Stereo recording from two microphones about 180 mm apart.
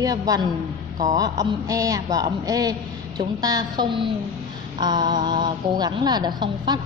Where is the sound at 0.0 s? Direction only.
20° right (ahead or behind).